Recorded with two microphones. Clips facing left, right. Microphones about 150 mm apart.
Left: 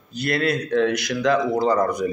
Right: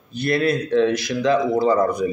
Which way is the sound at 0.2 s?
25° right (ahead or behind).